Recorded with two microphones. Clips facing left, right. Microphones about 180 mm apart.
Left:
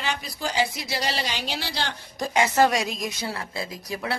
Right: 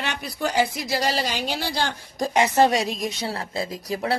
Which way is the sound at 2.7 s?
30° right (ahead or behind).